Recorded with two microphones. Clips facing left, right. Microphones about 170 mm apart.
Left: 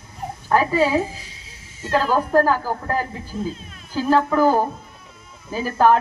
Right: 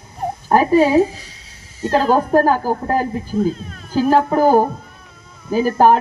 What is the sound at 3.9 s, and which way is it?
Speech, 45° right (ahead or behind).